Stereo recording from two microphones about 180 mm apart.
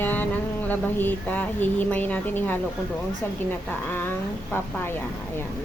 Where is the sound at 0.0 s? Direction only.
10° left (ahead or behind).